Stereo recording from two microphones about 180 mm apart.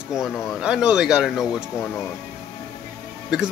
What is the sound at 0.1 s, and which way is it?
Speech, 5° right (ahead or behind).